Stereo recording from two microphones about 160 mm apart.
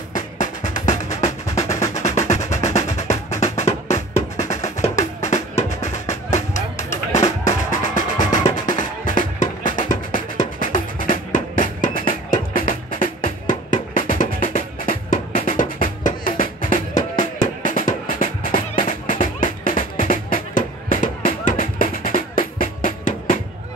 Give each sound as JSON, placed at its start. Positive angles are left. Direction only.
{"t": 0.1, "sound": "music", "side_deg": 50}
{"t": 6.3, "sound": "vehicle", "side_deg": 45}
{"t": 7.2, "sound": "music", "side_deg": 50}